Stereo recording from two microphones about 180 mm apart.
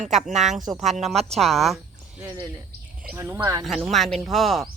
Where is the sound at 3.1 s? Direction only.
15° right (ahead or behind).